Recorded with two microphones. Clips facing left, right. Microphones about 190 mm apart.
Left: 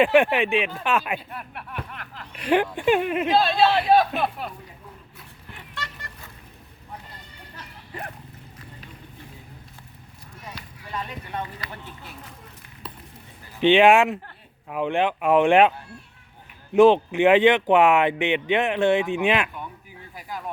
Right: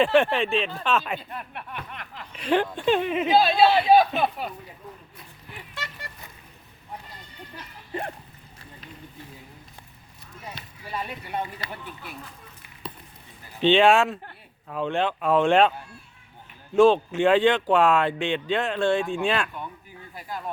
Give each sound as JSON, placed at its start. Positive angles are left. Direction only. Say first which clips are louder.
{"t": 0.0, "sound": "speech", "louder": "left 2 dB", "side_deg": 15}
{"t": 5.5, "sound": "vehicle", "louder": "left 1 dB", "side_deg": -5}
{"t": 7.9, "sound": "speech", "louder": "right 5 dB", "side_deg": -25}
{"t": 10.9, "sound": "speech", "louder": "right 1 dB", "side_deg": -10}
{"t": 13.6, "sound": "speech", "louder": "left 2 dB", "side_deg": 15}
{"t": 16.7, "sound": "speech", "louder": "left 2 dB", "side_deg": 15}